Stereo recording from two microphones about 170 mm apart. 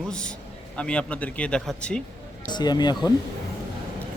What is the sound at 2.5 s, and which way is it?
Speech, 25° left (ahead or behind).